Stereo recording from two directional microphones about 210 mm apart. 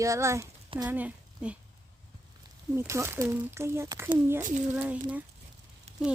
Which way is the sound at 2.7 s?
15° right (ahead or behind).